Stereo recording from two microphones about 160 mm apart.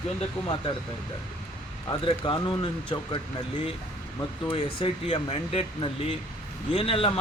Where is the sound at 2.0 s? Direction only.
30° left (ahead or behind).